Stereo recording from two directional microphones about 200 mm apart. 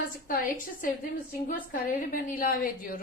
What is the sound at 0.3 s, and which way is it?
A woman's voice, 45° left (ahead or behind).